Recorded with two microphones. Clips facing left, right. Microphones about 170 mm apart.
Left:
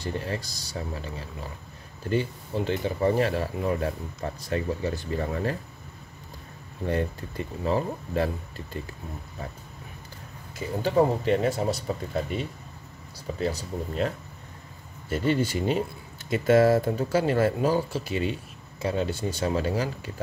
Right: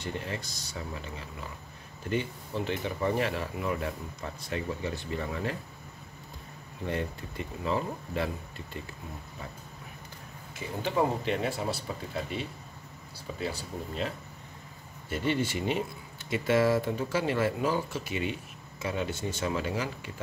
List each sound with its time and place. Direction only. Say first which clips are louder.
0.0 s speech: left 4 dB; 35° left (ahead or behind)
2.0 s speech: left 4 dB; 35° left (ahead or behind)
6.9 s speech: left 5 dB; 40° left (ahead or behind)
10.5 s speech: left 6 dB; 40° left (ahead or behind)
13.4 s speech: left 6 dB; 40° left (ahead or behind)